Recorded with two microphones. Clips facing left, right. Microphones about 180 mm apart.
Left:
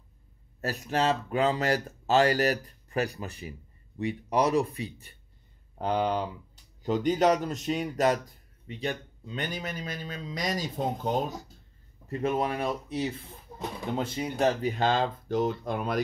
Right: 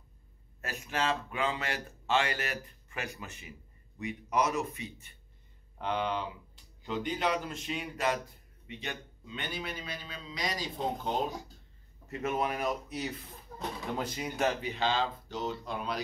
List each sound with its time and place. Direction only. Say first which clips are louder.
0.6 s a man's voice: left 6 dB; 40° left (ahead or behind)
12.1 s speech: left 4 dB; 30° left (ahead or behind)
14.6 s a man's voice: left 5 dB; 45° left (ahead or behind)